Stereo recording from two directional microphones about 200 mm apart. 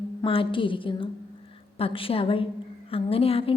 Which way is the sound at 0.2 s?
25° left (ahead or behind).